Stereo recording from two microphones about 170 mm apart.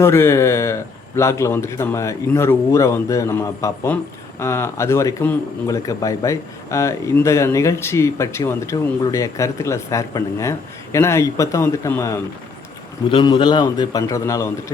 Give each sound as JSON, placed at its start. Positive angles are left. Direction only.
{"t": 0.0, "sound": "speech", "side_deg": 15}
{"t": 13.1, "sound": "a man's voice", "side_deg": 30}